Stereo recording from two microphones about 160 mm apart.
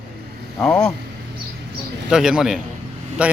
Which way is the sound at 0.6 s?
5° left (ahead or behind).